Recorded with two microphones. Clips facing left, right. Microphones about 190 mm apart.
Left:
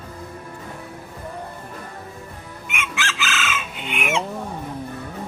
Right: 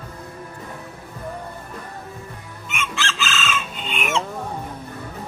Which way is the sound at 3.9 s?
15° left (ahead or behind).